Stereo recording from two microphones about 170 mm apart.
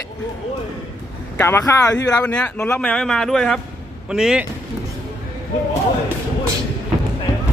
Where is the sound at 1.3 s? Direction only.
15° left (ahead or behind).